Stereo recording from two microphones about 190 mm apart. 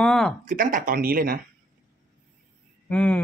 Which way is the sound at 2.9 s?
10° left (ahead or behind).